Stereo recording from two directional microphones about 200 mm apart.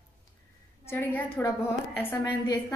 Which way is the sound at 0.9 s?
10° left (ahead or behind).